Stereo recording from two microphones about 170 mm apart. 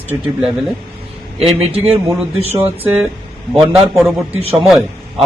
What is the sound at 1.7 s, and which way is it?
Speech, 35° right (ahead or behind).